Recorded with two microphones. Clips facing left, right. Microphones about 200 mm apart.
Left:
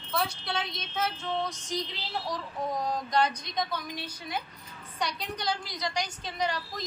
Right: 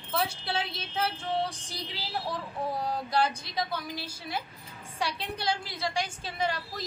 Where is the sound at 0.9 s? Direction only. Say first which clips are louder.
Right 1 dB; 30° right (ahead or behind).